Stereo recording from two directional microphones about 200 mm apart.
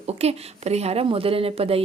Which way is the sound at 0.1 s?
30° right (ahead or behind).